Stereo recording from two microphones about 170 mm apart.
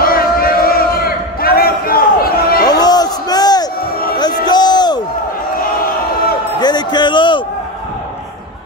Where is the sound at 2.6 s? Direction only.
25° left (ahead or behind).